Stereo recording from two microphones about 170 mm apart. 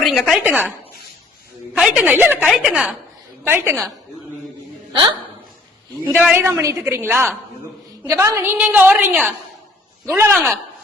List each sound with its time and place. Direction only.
0.0 s speech: centre (ahead or behind)
1.7 s a woman's voice: 5° right (ahead or behind)
4.9 s a woman's voice: 25° right (ahead or behind)
6.2 s a woman's voice: 10° right (ahead or behind)
10.3 s speech: centre (ahead or behind)